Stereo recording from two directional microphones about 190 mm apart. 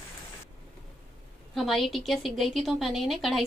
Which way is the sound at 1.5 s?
Centre (ahead or behind).